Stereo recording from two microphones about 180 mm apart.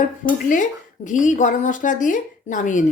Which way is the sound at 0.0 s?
45° left (ahead or behind).